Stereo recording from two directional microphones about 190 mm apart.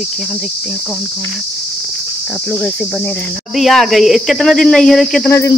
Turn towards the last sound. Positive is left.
turn(degrees=15)  # may be behind; listen again after turning